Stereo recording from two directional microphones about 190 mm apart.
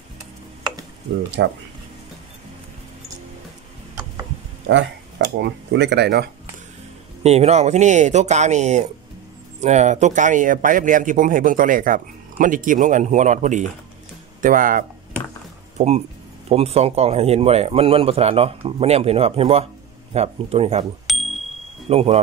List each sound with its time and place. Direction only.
1.1 s speech: 70° right (ahead or behind)
5.4 s speech: 65° right (ahead or behind)
7.2 s speech: 35° right (ahead or behind)
21.1 s a sound: centre (ahead or behind)
21.8 s speech: 30° right (ahead or behind)